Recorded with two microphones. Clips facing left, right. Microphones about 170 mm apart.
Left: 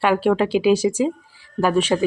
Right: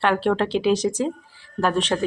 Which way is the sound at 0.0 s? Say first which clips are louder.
Left 3 dB; 10° left (ahead or behind).